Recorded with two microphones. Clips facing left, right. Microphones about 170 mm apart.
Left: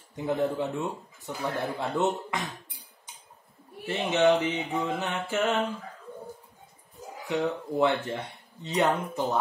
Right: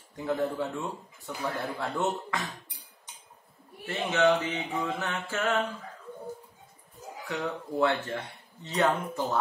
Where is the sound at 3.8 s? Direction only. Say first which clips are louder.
Left 2 dB; 15° left (ahead or behind).